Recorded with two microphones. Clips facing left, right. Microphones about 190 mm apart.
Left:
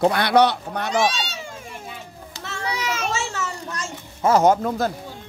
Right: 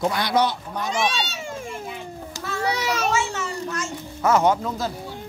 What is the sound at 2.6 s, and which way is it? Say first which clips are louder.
Children playing: right 3 dB; 40° right (ahead or behind).